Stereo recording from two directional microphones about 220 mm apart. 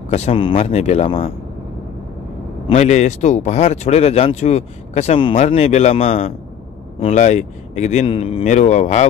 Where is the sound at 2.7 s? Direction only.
30° left (ahead or behind).